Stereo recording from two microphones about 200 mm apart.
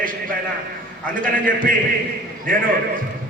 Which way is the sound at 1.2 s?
45° right (ahead or behind).